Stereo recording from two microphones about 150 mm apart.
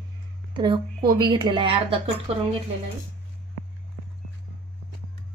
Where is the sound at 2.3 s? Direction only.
45° right (ahead or behind).